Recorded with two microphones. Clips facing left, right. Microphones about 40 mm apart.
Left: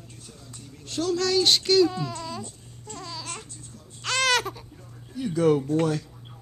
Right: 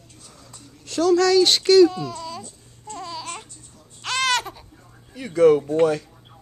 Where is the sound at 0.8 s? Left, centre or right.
Right.